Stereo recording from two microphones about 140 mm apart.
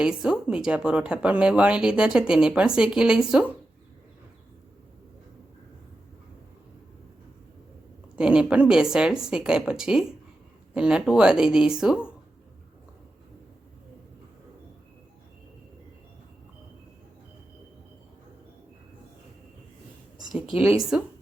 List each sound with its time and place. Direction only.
0.0 s a woman's voice: 5° right (ahead or behind)
8.1 s a woman's voice: 5° right (ahead or behind)
20.5 s speech: 40° left (ahead or behind)